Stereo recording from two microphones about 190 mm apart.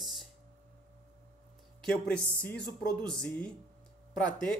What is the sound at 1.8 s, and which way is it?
Speech, 5° left (ahead or behind).